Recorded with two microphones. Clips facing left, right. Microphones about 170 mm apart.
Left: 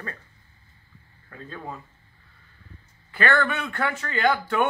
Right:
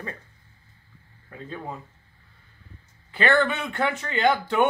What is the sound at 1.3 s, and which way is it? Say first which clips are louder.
Speech: right 2 dB; 20° right (ahead or behind).